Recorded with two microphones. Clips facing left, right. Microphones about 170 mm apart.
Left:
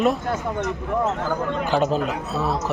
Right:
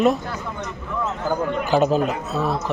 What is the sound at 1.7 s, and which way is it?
Speech, 5° right (ahead or behind).